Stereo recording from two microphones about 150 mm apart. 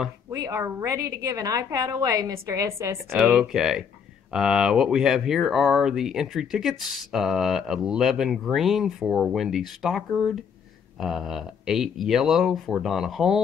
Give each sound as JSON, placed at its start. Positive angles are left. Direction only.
{"t": 0.3, "sound": "a woman's voice", "side_deg": -20}
{"t": 3.2, "sound": "speech", "side_deg": -5}